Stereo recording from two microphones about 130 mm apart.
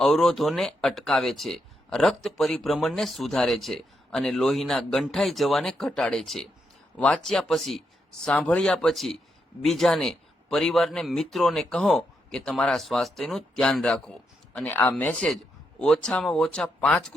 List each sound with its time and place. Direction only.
0.0 s speech: centre (ahead or behind)